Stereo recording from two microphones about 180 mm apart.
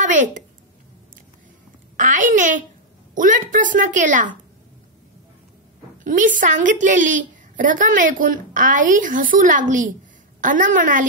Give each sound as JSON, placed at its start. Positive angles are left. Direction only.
{"t": 0.0, "sound": "a woman's voice", "side_deg": -45}
{"t": 2.0, "sound": "a woman's voice", "side_deg": -45}
{"t": 6.0, "sound": "a woman's voice", "side_deg": -45}